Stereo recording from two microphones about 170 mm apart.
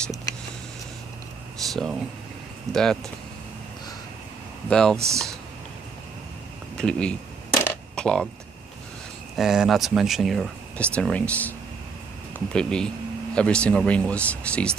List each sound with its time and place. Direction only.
1.7 s speech: centre (ahead or behind)
4.6 s speech: 5° left (ahead or behind)
4.9 s speech: 15° right (ahead or behind)
6.8 s speech: 5° left (ahead or behind)
9.4 s speech: 5° right (ahead or behind)
12.5 s speech: 5° left (ahead or behind)